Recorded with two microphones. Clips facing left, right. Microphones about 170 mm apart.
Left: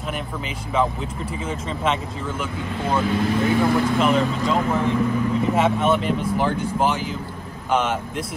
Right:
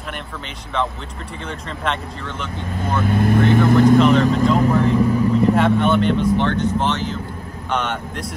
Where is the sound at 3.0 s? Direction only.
55° right (ahead or behind).